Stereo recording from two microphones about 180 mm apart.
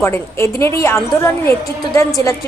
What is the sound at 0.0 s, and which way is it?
A woman's voice, 15° left (ahead or behind).